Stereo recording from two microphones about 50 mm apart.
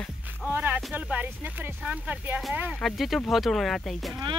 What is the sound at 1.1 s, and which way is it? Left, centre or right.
Speech, right.